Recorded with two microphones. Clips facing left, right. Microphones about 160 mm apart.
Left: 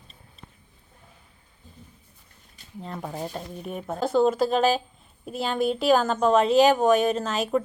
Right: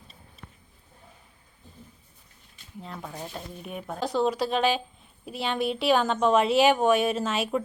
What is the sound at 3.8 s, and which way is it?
Speech, centre (ahead or behind).